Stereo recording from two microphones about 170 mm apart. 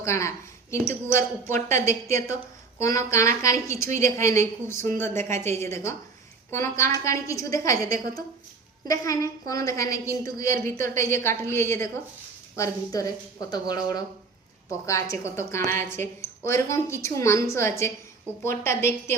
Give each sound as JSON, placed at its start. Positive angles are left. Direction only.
{"t": 0.0, "sound": "a woman's voice", "side_deg": 15}